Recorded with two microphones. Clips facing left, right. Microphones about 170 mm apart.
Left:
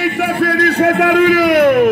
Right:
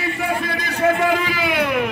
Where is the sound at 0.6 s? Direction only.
65° left (ahead or behind); by 1.9 s 50° left (ahead or behind).